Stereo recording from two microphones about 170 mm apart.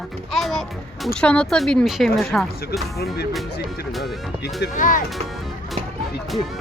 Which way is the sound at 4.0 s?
80° left.